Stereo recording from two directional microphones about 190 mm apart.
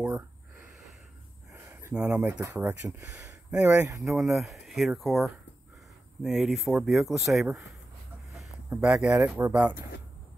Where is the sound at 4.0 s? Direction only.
Centre (ahead or behind).